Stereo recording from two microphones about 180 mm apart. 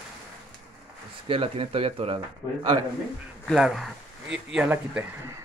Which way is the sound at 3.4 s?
Centre (ahead or behind).